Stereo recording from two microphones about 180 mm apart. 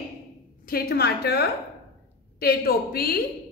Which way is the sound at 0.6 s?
60° left (ahead or behind).